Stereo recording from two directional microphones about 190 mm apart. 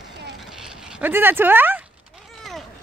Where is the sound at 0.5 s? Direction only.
5° right (ahead or behind).